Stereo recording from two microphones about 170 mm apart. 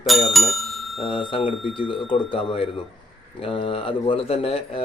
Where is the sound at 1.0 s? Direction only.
35° left (ahead or behind).